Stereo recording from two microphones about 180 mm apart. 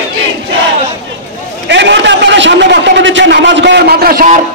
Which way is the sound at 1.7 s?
80° right.